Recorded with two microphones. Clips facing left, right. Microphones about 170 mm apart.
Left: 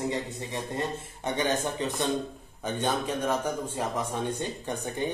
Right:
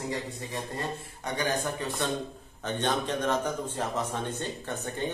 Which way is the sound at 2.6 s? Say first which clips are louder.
Even; 10° left (ahead or behind).